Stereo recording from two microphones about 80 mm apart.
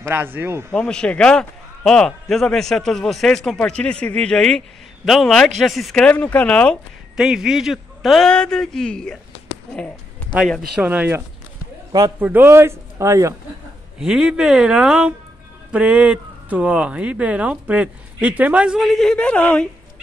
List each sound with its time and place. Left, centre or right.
0.1 s speech: right
0.7 s a man's voice: centre
3.5 s a man's voice: centre
6.0 s speech: centre
7.2 s speech: centre
8.3 s speech: centre
10.8 s speech: right
13.9 s speech: centre
18.8 s a man's voice: centre
19.1 s speech: centre